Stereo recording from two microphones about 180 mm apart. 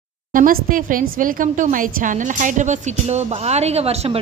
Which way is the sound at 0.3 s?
50° right (ahead or behind).